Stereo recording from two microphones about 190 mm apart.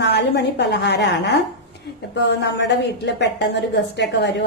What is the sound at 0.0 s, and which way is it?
A woman's voice, 65° left (ahead or behind).